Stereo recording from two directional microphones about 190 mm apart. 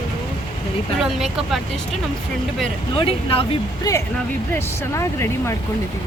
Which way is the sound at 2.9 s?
30° left (ahead or behind).